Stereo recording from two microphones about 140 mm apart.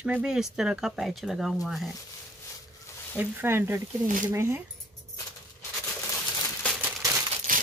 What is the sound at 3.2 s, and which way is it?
Speech, 15° right (ahead or behind).